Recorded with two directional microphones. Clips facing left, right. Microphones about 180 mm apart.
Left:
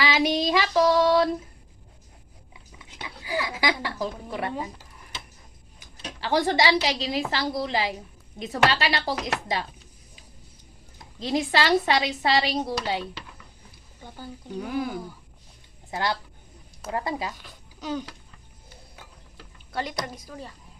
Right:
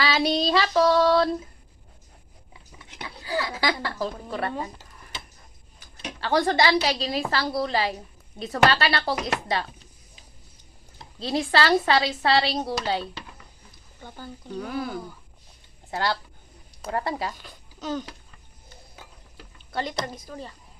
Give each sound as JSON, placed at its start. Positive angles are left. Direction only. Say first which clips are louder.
{"t": 0.0, "sound": "female singing", "louder": "even", "side_deg": 15}
{"t": 3.2, "sound": "a woman's voice", "louder": "even", "side_deg": 15}
{"t": 6.1, "sound": "a woman's voice", "louder": "right 1 dB", "side_deg": 15}
{"t": 11.2, "sound": "a woman's voice", "louder": "right 1 dB", "side_deg": 15}
{"t": 17.2, "sound": "speech", "louder": "right 2 dB", "side_deg": 10}
{"t": 19.7, "sound": "a woman's voice", "louder": "right 1 dB", "side_deg": 10}